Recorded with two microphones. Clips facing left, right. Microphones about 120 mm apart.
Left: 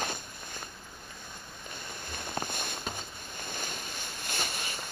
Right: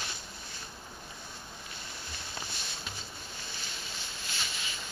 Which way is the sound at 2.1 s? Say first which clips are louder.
Left 9 dB; 50° left (ahead or behind).